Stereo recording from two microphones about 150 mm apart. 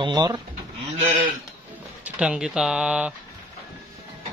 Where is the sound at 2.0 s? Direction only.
10° right (ahead or behind).